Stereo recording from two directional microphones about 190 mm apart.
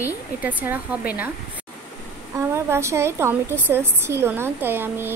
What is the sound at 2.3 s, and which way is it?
A woman's voice, 15° right (ahead or behind).